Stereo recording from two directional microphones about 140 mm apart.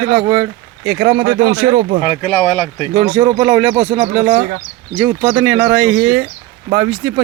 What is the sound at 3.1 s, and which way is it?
Speech, 35° right (ahead or behind).